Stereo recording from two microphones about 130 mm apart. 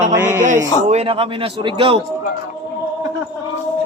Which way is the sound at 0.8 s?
55° right (ahead or behind).